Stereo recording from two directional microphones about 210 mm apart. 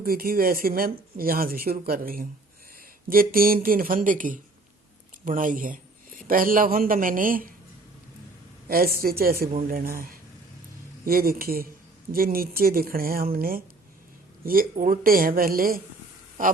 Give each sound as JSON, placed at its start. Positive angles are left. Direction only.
{"t": 0.0, "sound": "a man's voice", "side_deg": -45}
{"t": 8.7, "sound": "speech", "side_deg": -45}